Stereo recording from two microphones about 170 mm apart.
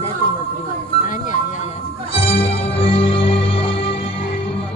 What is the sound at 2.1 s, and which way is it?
Music, 35° left (ahead or behind).